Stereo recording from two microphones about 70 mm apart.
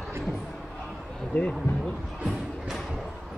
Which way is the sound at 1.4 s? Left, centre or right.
Centre.